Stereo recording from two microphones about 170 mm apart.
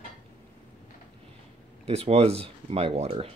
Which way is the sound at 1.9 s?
35° right (ahead or behind).